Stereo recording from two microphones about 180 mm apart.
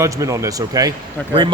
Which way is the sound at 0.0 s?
15° right (ahead or behind).